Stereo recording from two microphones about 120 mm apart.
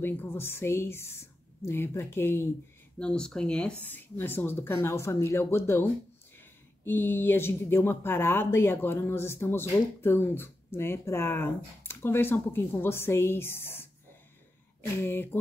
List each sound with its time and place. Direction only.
0.0 s speech: 20° left (ahead or behind)
3.0 s speech: 5° left (ahead or behind)
15.0 s speech: 20° left (ahead or behind)